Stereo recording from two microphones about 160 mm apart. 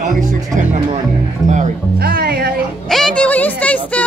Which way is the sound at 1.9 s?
75° right (ahead or behind).